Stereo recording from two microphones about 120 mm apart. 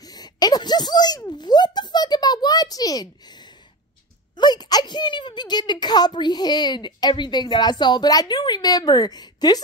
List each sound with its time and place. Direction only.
0.0 s speech: 35° left (ahead or behind)
1.3 s a sound: 35° left (ahead or behind)
4.4 s a woman's voice: 35° left (ahead or behind)